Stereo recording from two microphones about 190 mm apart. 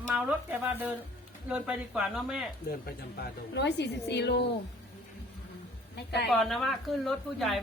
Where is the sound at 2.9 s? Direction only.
55° left (ahead or behind).